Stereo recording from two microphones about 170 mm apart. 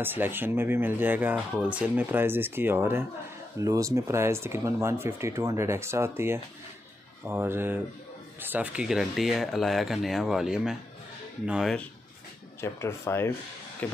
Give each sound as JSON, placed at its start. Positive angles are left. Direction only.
{"t": 0.0, "sound": "speech", "side_deg": -10}
{"t": 12.5, "sound": "speech", "side_deg": 15}